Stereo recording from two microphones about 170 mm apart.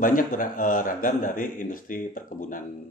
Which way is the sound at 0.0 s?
55° left (ahead or behind).